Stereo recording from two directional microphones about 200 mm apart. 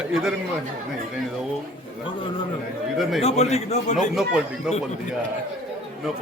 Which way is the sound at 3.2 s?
35° left (ahead or behind).